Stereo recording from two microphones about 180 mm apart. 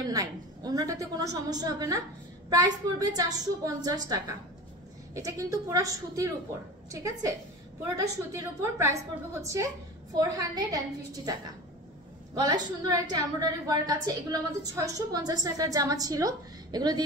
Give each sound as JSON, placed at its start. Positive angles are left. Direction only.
{"t": 0.0, "sound": "a woman's voice", "side_deg": -20}
{"t": 12.4, "sound": "a woman's voice", "side_deg": -20}